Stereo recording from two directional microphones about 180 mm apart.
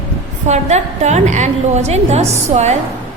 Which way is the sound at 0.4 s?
40° right (ahead or behind).